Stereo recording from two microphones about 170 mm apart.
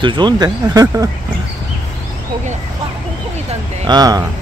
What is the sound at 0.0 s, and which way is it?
Speech, 25° right (ahead or behind).